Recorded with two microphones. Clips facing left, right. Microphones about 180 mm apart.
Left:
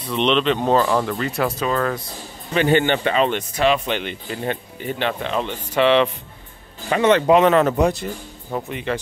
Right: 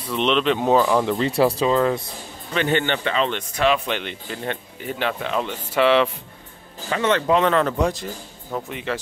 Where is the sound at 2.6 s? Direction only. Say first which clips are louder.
Left 4 dB; 10° left (ahead or behind); by 6.1 s 5° right (ahead or behind).